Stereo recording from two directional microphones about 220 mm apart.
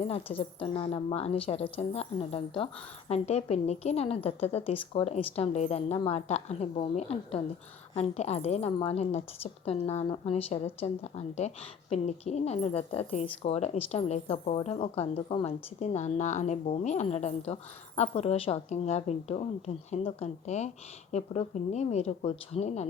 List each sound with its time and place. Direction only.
0.0 s a woman's voice: 25° left (ahead or behind)